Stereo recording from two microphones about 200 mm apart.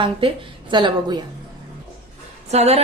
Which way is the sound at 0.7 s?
20° right (ahead or behind).